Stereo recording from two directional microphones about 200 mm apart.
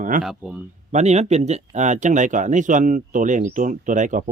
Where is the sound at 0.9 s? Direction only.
35° right (ahead or behind).